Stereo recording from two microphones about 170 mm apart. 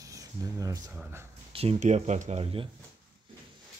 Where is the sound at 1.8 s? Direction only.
45° right (ahead or behind).